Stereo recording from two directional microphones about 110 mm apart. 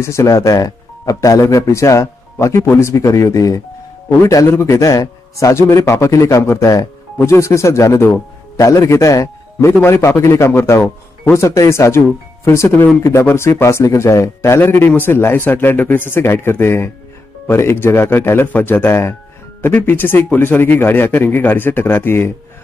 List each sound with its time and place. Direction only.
0.0 s a man's voice: 25° left (ahead or behind)